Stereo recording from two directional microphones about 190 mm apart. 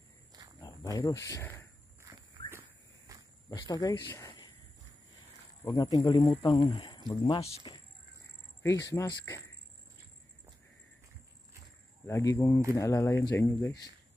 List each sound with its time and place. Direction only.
0.6 s speech: 20° left (ahead or behind)
3.1 s cricket: 20° right (ahead or behind)
3.4 s speech: 20° left (ahead or behind)
4.1 s a sound: 15° left (ahead or behind)
5.8 s speech: 20° left (ahead or behind)
12.1 s speech: 15° left (ahead or behind)